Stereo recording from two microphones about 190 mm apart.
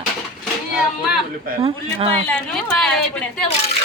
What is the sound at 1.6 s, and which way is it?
Speech, 30° right (ahead or behind).